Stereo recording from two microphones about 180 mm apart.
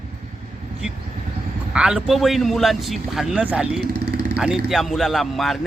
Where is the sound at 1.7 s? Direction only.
5° right (ahead or behind).